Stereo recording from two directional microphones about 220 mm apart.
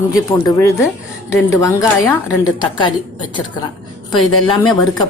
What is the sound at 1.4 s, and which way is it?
Speech, 15° left (ahead or behind).